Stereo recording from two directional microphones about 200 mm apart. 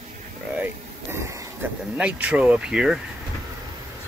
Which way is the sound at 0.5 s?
10° right (ahead or behind).